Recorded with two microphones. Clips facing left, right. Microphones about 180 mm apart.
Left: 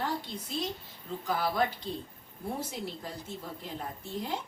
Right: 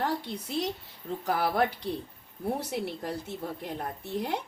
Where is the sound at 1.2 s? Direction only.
60° right (ahead or behind).